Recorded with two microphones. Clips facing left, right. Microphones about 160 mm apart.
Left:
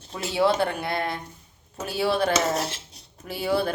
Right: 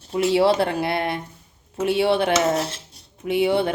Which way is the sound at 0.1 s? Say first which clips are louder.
Right 5 dB; 30° right (ahead or behind).